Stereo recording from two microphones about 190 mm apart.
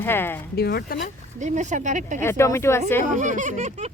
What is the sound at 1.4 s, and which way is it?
Speech, 40° right (ahead or behind).